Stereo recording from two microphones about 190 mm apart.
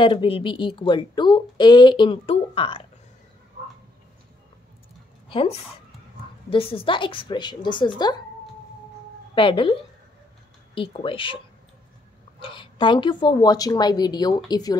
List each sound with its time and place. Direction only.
0.0 s a woman's voice: 25° left (ahead or behind)
6.5 s a woman's voice: 30° left (ahead or behind)
9.3 s a woman's voice: 25° left (ahead or behind)
12.4 s a woman's voice: 25° left (ahead or behind)